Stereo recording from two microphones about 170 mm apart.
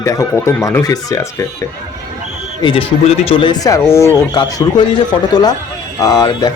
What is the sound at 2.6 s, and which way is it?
Speech, 30° left (ahead or behind).